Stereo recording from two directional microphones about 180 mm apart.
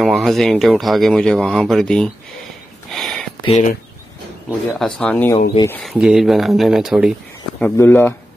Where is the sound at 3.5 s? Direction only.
40° left (ahead or behind).